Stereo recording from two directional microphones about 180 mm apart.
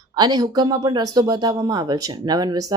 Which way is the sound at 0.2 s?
20° right (ahead or behind).